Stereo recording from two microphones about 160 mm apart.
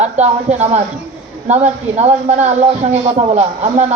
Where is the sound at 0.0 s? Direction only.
45° right (ahead or behind).